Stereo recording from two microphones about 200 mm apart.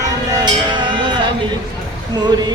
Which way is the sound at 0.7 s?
25° right (ahead or behind).